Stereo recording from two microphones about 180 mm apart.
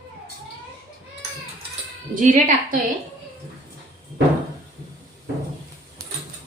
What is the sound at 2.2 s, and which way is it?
Speech, 45° right (ahead or behind).